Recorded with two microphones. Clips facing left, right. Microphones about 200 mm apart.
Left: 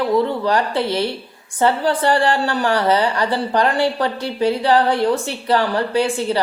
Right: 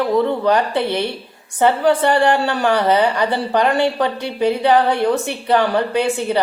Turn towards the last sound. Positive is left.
turn(degrees=-20)  # may be behind; listen again after turning